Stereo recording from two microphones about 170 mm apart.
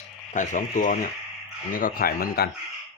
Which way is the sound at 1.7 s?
55° left (ahead or behind).